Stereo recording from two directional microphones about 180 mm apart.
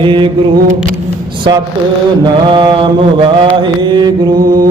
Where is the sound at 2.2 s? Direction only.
25° right (ahead or behind).